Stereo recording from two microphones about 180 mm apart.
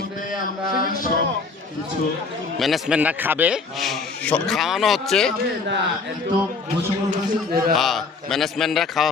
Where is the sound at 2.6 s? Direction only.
Centre (ahead or behind).